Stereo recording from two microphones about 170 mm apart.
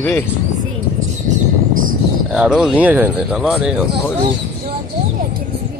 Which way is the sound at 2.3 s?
5° right (ahead or behind).